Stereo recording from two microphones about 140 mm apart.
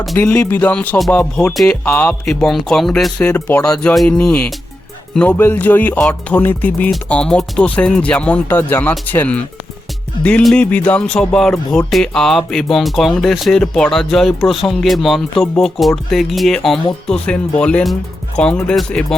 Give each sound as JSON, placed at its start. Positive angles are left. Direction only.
{"t": 0.2, "sound": "music", "side_deg": 15}
{"t": 11.9, "sound": "speech", "side_deg": 5}
{"t": 17.1, "sound": "music", "side_deg": 5}